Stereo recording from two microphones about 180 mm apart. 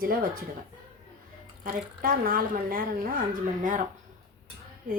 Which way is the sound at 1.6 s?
50° right (ahead or behind).